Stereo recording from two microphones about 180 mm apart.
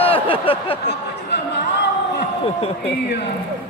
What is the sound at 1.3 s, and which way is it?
Chatter, 70° left (ahead or behind).